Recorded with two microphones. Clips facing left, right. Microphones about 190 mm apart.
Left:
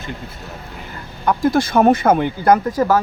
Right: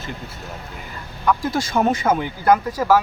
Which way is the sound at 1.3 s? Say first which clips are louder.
Left 5 dB; 55° left (ahead or behind).